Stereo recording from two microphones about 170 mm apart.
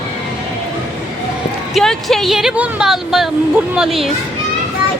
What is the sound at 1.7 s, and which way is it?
Speech, centre (ahead or behind).